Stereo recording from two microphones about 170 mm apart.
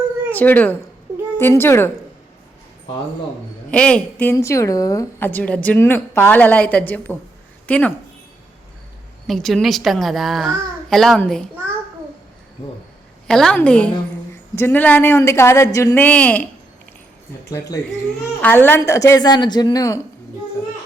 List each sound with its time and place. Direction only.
0.3 s a woman's voice: 10° left (ahead or behind)
3.7 s a woman's voice: 5° left (ahead or behind)
9.2 s a woman's voice: centre (ahead or behind)
13.2 s a woman's voice: 5° left (ahead or behind); by 20.0 s 20° left (ahead or behind)